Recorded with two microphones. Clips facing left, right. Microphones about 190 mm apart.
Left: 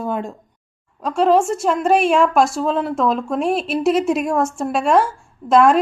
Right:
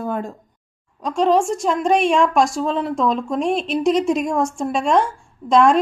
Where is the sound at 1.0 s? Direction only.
5° left (ahead or behind).